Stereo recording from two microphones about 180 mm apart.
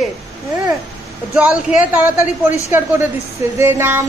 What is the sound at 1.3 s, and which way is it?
Speech, 5° right (ahead or behind).